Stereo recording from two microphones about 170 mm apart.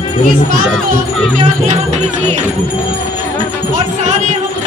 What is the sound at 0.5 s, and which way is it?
Speech, 55° right (ahead or behind).